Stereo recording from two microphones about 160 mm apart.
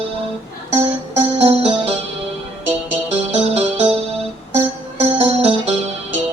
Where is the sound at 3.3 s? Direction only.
40° right (ahead or behind).